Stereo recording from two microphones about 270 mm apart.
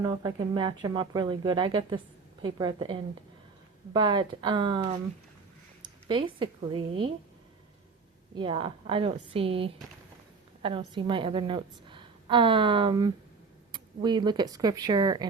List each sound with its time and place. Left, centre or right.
0.0 s speech: centre
6.1 s a woman's voice: centre
8.4 s a woman's voice: centre